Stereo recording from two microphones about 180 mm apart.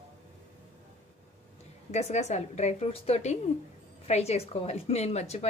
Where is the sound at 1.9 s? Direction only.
40° left (ahead or behind).